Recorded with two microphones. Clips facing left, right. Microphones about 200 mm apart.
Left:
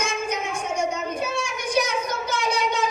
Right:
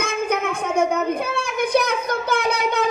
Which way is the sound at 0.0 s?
60° right (ahead or behind).